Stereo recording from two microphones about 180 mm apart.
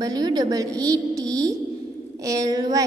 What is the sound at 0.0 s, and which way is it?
A woman's voice, 20° right (ahead or behind).